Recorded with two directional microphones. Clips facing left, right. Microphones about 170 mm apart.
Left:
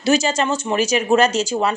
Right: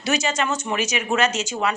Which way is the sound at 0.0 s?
30° left (ahead or behind).